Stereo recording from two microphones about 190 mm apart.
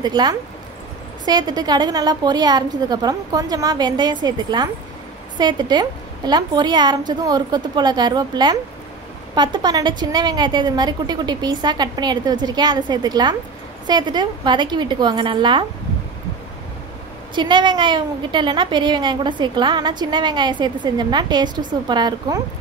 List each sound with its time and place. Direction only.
0.0 s a woman's voice: 20° right (ahead or behind)
17.4 s a woman's voice: 25° right (ahead or behind)